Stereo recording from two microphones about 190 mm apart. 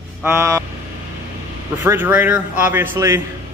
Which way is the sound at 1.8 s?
10° right (ahead or behind).